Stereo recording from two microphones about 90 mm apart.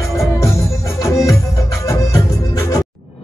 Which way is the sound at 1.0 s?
35° left (ahead or behind).